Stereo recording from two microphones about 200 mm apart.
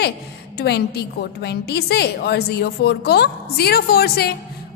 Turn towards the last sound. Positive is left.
turn(degrees=50)  # may be behind; listen again after turning